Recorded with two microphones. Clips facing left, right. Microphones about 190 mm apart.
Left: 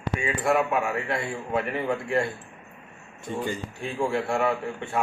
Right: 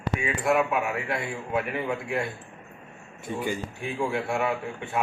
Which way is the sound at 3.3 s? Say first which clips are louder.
Even; 10° right (ahead or behind).